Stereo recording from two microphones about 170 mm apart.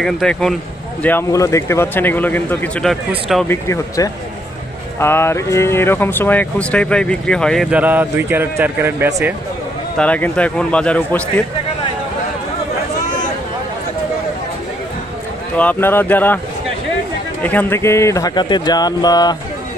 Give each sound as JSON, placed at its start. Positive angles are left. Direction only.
{"t": 0.0, "sound": "speech", "side_deg": 0}
{"t": 1.0, "sound": "speech", "side_deg": 15}
{"t": 3.4, "sound": "speech", "side_deg": 15}
{"t": 7.7, "sound": "speech", "side_deg": -10}
{"t": 9.9, "sound": "speech", "side_deg": 10}
{"t": 15.5, "sound": "speech", "side_deg": 10}
{"t": 17.4, "sound": "speech", "side_deg": 10}